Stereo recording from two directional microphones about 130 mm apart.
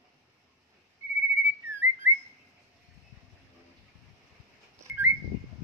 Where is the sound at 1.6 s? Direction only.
15° right (ahead or behind).